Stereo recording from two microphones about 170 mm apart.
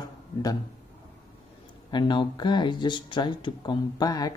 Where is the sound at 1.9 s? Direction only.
25° left (ahead or behind).